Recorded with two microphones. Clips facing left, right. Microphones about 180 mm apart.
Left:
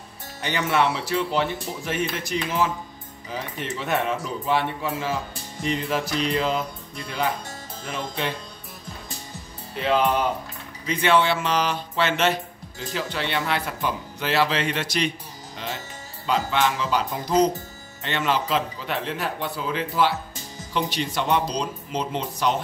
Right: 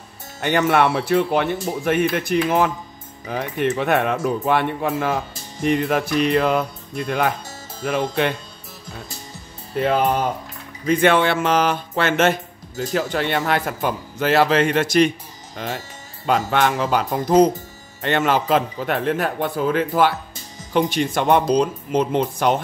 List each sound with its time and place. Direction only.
0.4 s speech: 55° right (ahead or behind)
9.8 s speech: 45° right (ahead or behind)